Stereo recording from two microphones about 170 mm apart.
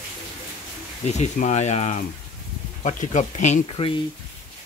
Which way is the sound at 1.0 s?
40° left (ahead or behind).